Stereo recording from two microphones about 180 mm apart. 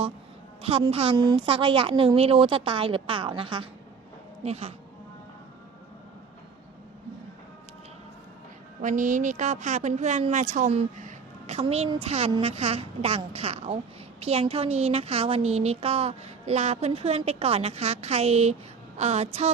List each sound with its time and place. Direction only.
0.6 s a woman's voice: 35° right (ahead or behind)
8.8 s a woman's voice: 45° right (ahead or behind)